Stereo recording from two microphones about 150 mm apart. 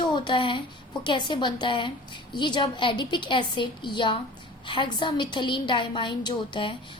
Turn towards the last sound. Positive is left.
turn(degrees=35)  # may be behind; listen again after turning